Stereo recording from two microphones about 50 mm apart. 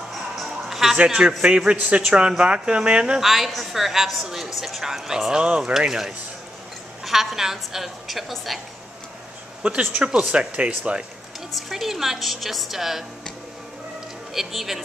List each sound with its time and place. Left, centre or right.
0.1 s music: centre
1.0 s speech: centre
3.2 s a woman's voice: centre
9.6 s speech: right
11.5 s a woman's voice: centre
14.3 s a woman's voice: centre